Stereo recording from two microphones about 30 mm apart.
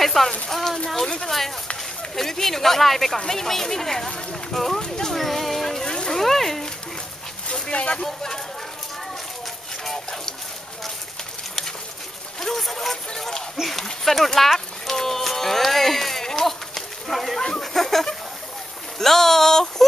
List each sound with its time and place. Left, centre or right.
0.0 s speech: centre
2.1 s speech: centre
4.8 s speech: left
5.1 s a sound: centre
5.9 s a sound: left
6.1 s speech: centre
7.7 s speech: left
8.0 s speech: centre
12.4 s speech: centre
14.0 s music: centre
16.4 s a sound: centre
18.9 s speech: centre